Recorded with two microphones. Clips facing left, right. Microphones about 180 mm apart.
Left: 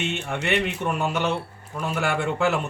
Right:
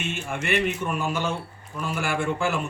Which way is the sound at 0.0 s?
70° left (ahead or behind).